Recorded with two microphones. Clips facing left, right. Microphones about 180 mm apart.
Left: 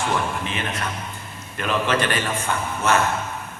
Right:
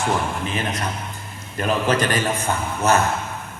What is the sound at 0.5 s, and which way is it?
A man's voice, 40° right (ahead or behind).